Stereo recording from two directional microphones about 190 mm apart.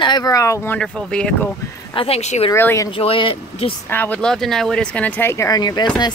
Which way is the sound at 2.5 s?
15° left (ahead or behind).